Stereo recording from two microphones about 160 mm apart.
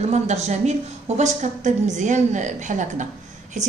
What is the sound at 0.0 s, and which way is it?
A woman's voice, 45° right (ahead or behind).